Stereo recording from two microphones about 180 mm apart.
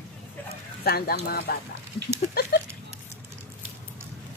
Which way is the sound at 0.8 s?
60° left (ahead or behind).